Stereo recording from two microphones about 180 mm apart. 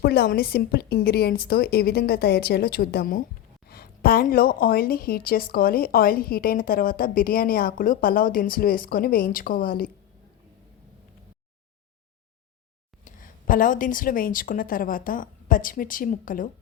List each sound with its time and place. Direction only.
0.0 s a woman's voice: 60° left (ahead or behind)
13.1 s a woman's voice: 50° left (ahead or behind)